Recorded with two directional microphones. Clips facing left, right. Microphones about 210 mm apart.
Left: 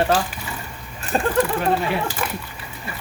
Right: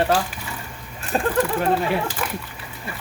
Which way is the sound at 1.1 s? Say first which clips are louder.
Left 1 dB; 5° right (ahead or behind).